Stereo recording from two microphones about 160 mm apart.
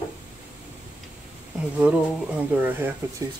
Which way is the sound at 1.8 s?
10° right (ahead or behind).